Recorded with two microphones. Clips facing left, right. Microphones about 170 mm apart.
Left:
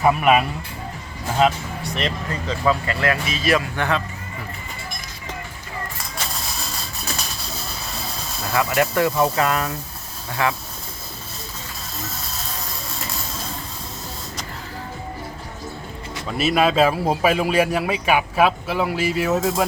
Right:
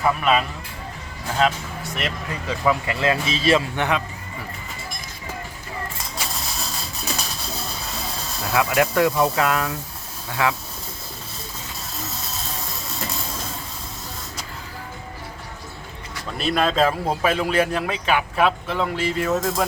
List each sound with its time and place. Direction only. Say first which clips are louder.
0.0 s a man's voice: left 3 dB; 15° left (ahead or behind)
2.0 s speech: left 3 dB; 5° right (ahead or behind)
8.4 s speech: even; 5° right (ahead or behind)
16.4 s a man's voice: left 3 dB; 5° left (ahead or behind)